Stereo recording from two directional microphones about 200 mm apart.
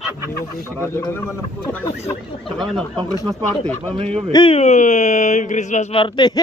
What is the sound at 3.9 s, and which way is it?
Speech, 30° right (ahead or behind).